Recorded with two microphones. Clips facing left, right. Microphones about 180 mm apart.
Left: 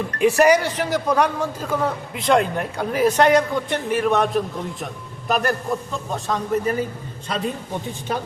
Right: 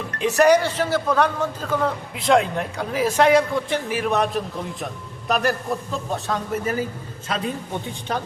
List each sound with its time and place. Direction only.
0.3 s a man's voice: 10° left (ahead or behind)